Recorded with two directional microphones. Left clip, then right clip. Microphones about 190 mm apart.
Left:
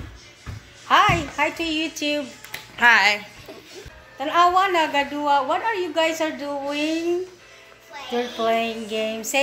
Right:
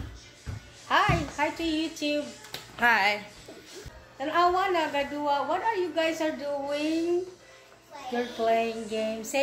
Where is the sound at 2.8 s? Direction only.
10° right (ahead or behind).